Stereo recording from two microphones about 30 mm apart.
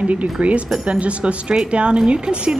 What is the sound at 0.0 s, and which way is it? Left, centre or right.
A woman's voice, right.